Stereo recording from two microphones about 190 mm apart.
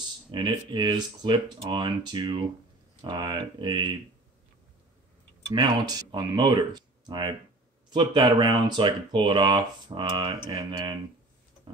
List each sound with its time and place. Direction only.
0.3 s speech: 25° right (ahead or behind)
5.5 s speech: 25° right (ahead or behind)